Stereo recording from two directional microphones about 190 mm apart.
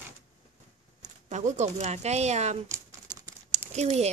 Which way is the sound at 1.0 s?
40° right (ahead or behind).